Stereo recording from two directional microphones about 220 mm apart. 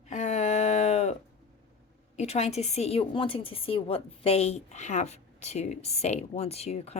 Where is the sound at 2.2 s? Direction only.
30° left (ahead or behind).